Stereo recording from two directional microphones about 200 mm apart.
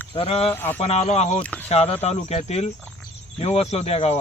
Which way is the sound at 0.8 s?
35° left (ahead or behind).